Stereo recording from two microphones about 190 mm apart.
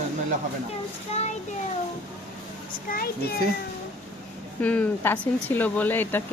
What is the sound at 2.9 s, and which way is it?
Speech, 50° left (ahead or behind).